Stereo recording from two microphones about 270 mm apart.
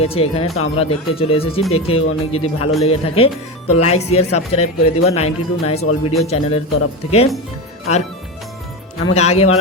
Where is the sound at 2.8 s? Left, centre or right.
Left.